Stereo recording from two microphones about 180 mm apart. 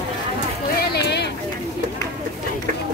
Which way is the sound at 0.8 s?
70° left (ahead or behind).